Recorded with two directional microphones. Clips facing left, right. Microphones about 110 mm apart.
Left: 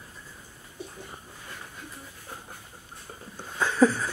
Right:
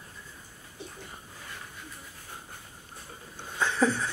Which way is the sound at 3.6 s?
5° left (ahead or behind).